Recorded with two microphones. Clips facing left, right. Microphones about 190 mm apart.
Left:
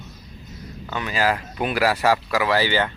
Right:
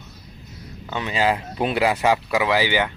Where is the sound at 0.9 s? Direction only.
20° right (ahead or behind).